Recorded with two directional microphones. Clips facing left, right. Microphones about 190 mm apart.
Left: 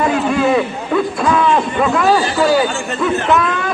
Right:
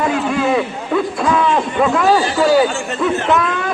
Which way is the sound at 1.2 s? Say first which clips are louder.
Left 2 dB; 20° right (ahead or behind).